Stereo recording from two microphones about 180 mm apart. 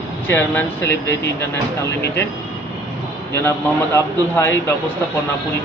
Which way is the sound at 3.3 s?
15° left (ahead or behind).